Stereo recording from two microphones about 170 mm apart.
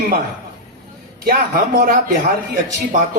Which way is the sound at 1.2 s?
55° right (ahead or behind).